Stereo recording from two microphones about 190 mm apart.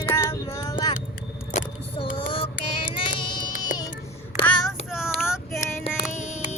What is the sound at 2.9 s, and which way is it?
Music, 25° left (ahead or behind).